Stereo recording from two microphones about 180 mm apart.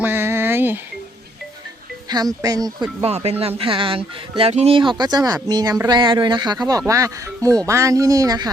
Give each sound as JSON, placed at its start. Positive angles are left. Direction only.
{"t": 0.0, "sound": "a sound", "side_deg": -10}
{"t": 2.0, "sound": "speech", "side_deg": -20}
{"t": 3.0, "sound": "speech", "side_deg": -35}